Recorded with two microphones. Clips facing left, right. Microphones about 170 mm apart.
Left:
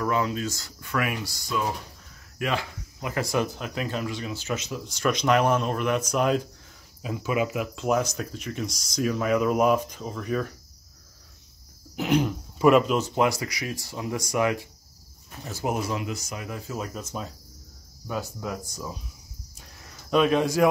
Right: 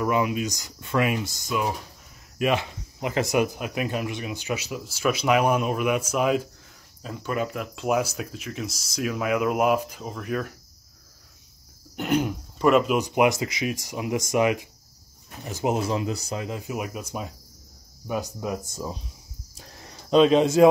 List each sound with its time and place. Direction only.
0.0 s speech: 15° right (ahead or behind)
7.0 s speech: 5° left (ahead or behind)
11.9 s speech: centre (ahead or behind)
12.9 s speech: 15° right (ahead or behind)
19.5 s a sound: 30° right (ahead or behind)